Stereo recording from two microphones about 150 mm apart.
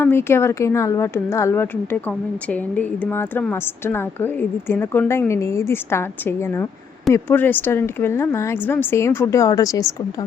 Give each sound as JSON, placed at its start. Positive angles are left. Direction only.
{"t": 0.0, "sound": "a woman's voice", "side_deg": 15}